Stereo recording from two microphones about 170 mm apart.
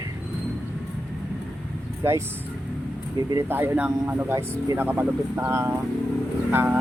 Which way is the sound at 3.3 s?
15° right (ahead or behind).